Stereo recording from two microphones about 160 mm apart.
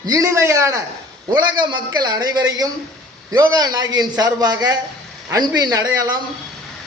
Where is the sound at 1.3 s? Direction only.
30° right (ahead or behind).